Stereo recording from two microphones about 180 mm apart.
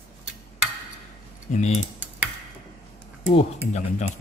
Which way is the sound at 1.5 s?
40° left (ahead or behind).